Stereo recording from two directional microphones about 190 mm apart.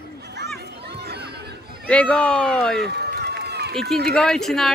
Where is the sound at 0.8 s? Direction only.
60° right (ahead or behind).